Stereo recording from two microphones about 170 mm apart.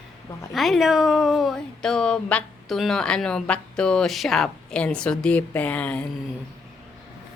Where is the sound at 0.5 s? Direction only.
Centre (ahead or behind).